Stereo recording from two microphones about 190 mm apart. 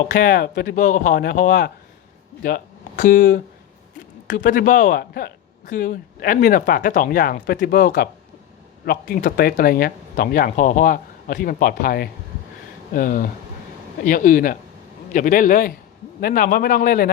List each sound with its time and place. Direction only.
0.1 s speech: 45° left (ahead or behind)